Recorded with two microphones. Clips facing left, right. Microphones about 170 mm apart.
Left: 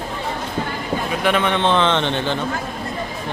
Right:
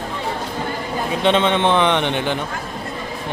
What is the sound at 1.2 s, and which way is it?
A man's voice, 25° right (ahead or behind).